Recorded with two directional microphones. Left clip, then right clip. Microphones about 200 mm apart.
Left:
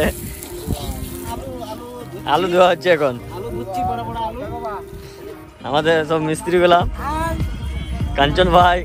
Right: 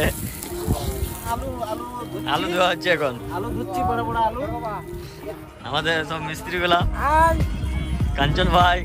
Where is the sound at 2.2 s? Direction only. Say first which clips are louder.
Left 7 dB; 5° right (ahead or behind).